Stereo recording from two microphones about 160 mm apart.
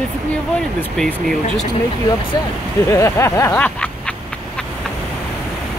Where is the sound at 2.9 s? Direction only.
20° left (ahead or behind).